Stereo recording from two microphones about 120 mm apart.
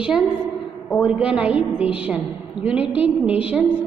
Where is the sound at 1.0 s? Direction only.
10° right (ahead or behind).